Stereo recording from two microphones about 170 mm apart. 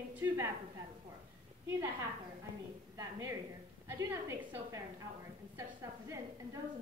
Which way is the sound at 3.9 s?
15° right (ahead or behind).